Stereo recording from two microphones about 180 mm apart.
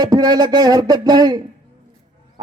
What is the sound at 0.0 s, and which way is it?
Speech, 20° right (ahead or behind).